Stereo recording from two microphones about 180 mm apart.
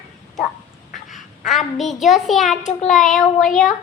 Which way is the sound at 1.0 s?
Centre (ahead or behind).